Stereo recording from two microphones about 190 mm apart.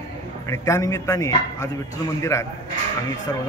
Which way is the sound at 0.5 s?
15° left (ahead or behind).